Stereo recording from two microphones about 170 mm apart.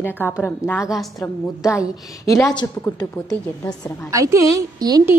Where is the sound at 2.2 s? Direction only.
20° left (ahead or behind).